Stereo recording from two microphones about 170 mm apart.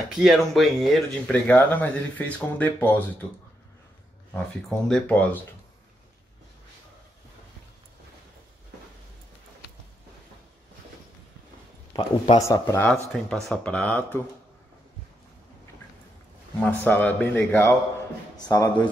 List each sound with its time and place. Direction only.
0.1 s speech: centre (ahead or behind)
4.3 s speech: 5° left (ahead or behind)
11.9 s speech: 30° left (ahead or behind)
12.4 s speech: 15° left (ahead or behind)
13.1 s speech: 5° left (ahead or behind)
16.5 s a man's voice: 10° left (ahead or behind)